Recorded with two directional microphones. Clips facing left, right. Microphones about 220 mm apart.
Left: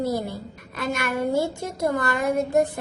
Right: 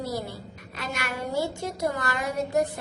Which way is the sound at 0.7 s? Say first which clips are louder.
Left 7 dB; 50° left (ahead or behind).